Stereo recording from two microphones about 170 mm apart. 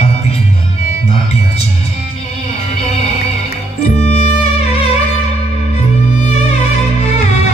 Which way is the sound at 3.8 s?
40° left (ahead or behind).